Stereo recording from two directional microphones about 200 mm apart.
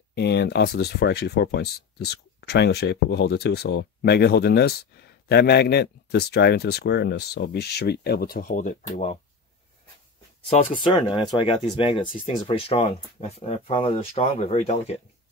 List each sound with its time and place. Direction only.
0.1 s speech: 55° left (ahead or behind); by 9.2 s 35° left (ahead or behind)
10.7 s speech: 25° left (ahead or behind)